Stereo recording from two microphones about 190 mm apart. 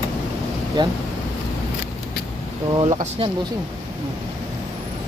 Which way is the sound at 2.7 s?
20° right (ahead or behind).